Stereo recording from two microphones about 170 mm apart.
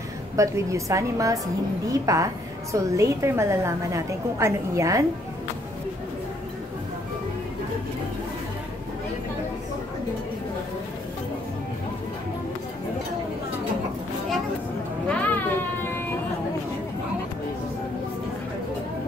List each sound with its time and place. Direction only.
0.4 s a woman's voice: 20° right (ahead or behind)
15.0 s music: 10° left (ahead or behind)